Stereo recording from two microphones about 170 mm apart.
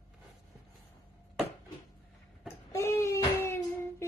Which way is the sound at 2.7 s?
15° left (ahead or behind).